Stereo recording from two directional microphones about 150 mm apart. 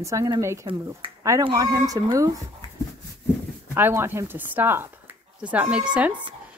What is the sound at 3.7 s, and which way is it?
A woman's voice, 15° right (ahead or behind).